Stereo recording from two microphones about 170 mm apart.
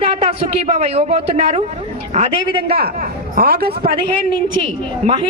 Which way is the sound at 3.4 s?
65° right (ahead or behind).